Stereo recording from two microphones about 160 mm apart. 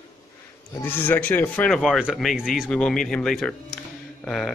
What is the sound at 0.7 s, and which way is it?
Speech, 15° left (ahead or behind).